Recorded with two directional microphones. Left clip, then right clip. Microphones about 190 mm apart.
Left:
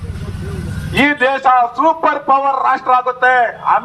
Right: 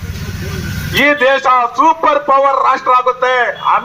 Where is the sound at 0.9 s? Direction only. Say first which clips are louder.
Right 3 dB; 25° left (ahead or behind).